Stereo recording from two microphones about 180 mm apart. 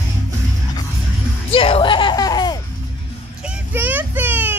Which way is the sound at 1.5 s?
30° left (ahead or behind).